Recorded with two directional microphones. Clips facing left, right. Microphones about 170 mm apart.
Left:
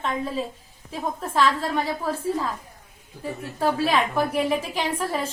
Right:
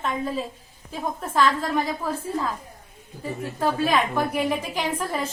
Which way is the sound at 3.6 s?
Centre (ahead or behind).